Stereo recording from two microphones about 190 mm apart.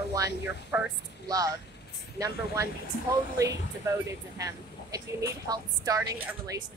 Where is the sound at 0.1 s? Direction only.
15° right (ahead or behind).